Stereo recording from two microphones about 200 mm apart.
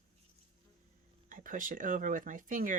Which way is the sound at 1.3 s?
40° right (ahead or behind).